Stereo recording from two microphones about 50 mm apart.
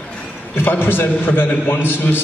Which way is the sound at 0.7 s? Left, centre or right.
Left.